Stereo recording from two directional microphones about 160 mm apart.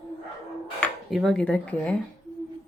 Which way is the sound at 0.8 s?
Centre (ahead or behind).